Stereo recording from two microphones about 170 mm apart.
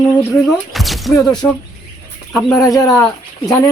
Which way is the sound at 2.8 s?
20° left (ahead or behind).